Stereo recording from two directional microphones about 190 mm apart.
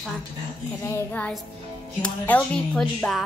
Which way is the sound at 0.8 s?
15° left (ahead or behind).